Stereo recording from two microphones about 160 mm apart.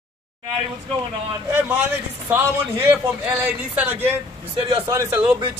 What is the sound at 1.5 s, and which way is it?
Speech, 15° right (ahead or behind).